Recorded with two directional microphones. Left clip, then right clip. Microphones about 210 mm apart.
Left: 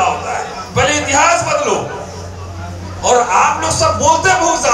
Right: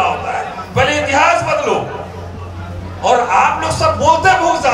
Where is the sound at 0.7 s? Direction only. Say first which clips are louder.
Even; 45° left (ahead or behind).